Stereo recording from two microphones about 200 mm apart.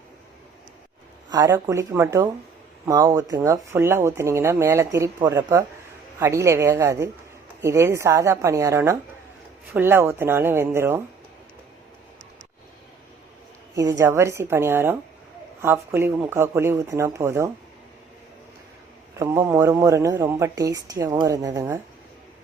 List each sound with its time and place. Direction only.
1.3 s a woman's voice: 20° right (ahead or behind)
13.7 s a woman's voice: 15° right (ahead or behind)
19.2 s a woman's voice: 15° right (ahead or behind)